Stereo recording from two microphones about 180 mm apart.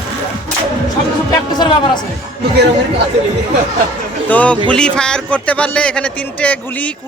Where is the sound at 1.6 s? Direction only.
25° left (ahead or behind).